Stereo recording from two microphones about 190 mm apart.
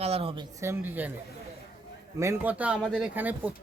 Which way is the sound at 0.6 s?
10° right (ahead or behind).